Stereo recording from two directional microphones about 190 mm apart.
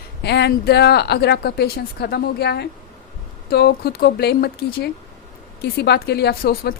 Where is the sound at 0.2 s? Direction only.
60° left (ahead or behind).